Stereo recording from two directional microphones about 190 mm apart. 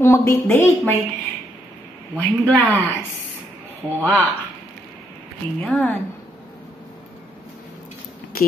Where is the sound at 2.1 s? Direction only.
10° left (ahead or behind).